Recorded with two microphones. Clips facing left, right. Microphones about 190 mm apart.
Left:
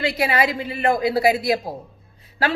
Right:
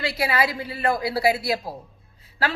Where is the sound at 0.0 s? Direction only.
25° left (ahead or behind).